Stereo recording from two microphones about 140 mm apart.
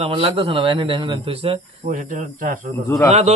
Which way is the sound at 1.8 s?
70° right (ahead or behind).